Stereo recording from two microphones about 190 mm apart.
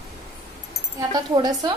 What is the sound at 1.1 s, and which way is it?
Speech, 20° right (ahead or behind).